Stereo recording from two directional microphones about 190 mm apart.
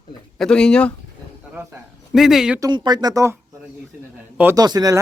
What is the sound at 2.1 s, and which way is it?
Speech, centre (ahead or behind).